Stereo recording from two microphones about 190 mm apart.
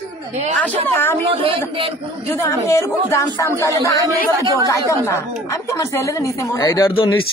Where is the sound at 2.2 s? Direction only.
15° left (ahead or behind).